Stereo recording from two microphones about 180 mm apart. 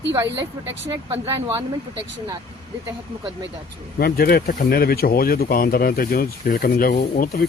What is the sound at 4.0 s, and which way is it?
Speech, 55° left (ahead or behind).